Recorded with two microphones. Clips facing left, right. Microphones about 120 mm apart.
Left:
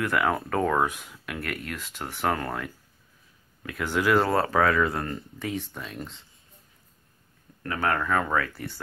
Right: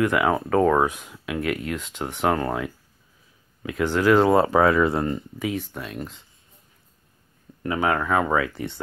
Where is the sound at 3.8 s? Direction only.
5° left (ahead or behind).